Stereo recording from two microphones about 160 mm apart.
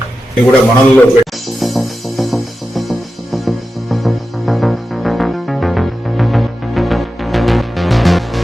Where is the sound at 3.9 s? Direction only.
Centre (ahead or behind).